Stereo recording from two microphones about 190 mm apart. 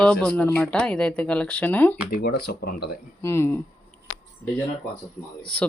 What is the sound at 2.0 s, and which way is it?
Speech, 50° left (ahead or behind).